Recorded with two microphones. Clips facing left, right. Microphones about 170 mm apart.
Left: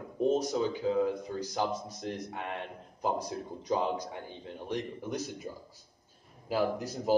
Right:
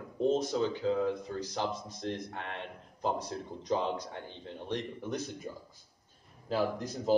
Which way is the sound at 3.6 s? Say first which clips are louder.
Left 1 dB; 10° left (ahead or behind).